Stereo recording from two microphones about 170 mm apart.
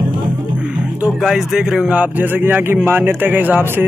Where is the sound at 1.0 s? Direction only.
5° right (ahead or behind).